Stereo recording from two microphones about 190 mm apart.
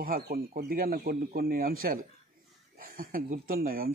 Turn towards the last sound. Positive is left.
turn(degrees=-50)  # may be behind; listen again after turning